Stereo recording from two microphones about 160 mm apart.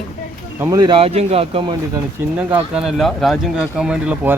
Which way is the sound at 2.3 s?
10° right (ahead or behind).